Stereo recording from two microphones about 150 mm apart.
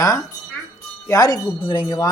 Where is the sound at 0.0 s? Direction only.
25° left (ahead or behind).